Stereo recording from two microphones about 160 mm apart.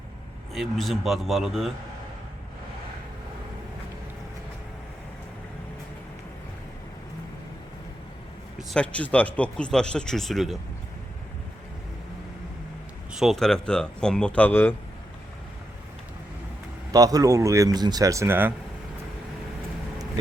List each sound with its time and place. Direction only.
0.5 s a man's voice: centre (ahead or behind)
8.5 s a man's voice: 5° left (ahead or behind)
13.1 s a man's voice: centre (ahead or behind)
16.9 s speech: 20° right (ahead or behind)